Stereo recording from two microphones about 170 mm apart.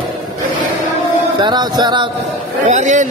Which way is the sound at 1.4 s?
25° right (ahead or behind).